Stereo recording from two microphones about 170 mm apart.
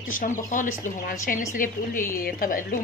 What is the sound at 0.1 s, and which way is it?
Speech, 55° left (ahead or behind).